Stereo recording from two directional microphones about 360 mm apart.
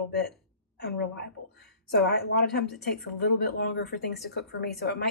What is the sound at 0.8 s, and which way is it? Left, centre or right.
Speech, left.